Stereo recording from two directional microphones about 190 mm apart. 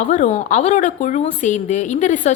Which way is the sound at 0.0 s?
40° left (ahead or behind).